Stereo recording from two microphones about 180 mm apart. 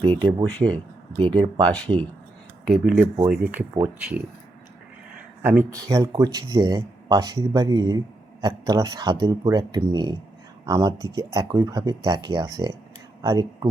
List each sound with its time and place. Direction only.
0.1 s speech: 10° left (ahead or behind)
1.1 s speech: 30° right (ahead or behind)
1.7 s speech: 5° left (ahead or behind)
3.2 s speech: 10° right (ahead or behind)
5.4 s speech: 10° right (ahead or behind)